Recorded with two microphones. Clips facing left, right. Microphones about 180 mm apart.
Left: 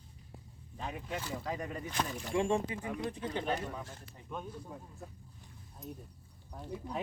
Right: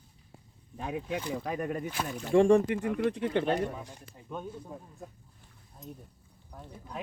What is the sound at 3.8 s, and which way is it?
Speech, 15° right (ahead or behind).